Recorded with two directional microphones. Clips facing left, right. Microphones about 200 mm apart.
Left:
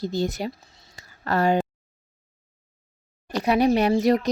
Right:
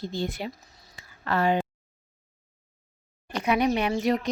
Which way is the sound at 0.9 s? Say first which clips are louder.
Left 3 dB; 40° left (ahead or behind).